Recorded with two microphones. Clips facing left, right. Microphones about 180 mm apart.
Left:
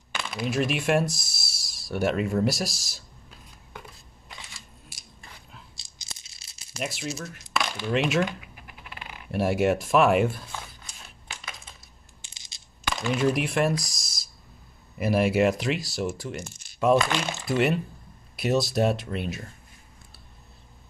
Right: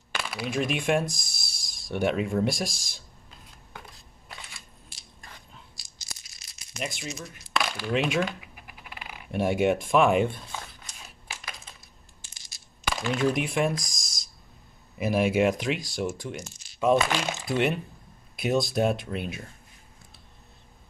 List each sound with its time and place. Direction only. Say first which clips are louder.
0.1 s a sound: left 2 dB; 10° right (ahead or behind)
0.5 s speech: left 1 dB; 5° left (ahead or behind)
5.8 s rattle: even; 25° left (ahead or behind)
6.8 s speech: left 3 dB; 5° left (ahead or behind)
9.3 s speech: left 1 dB; 5° left (ahead or behind)
12.8 s speech: left 1 dB; centre (ahead or behind)
16.3 s speech: left 2 dB; 55° left (ahead or behind)
16.8 s speech: left 1 dB; centre (ahead or behind)